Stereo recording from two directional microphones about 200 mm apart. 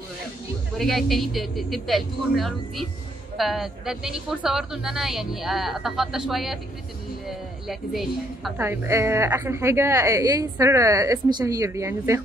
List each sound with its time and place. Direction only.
0.7 s a woman's voice: centre (ahead or behind)
8.5 s a woman's voice: 15° right (ahead or behind)